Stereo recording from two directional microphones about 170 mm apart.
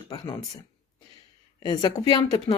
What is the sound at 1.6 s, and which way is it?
Speech, 25° left (ahead or behind).